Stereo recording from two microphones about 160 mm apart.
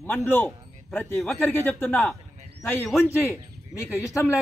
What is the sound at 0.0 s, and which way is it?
Speech, 15° left (ahead or behind).